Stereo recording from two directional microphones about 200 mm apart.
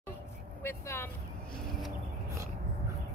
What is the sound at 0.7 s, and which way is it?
Speech, 10° left (ahead or behind).